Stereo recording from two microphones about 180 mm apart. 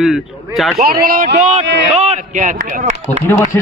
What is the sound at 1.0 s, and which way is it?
A man's voice, 50° right (ahead or behind).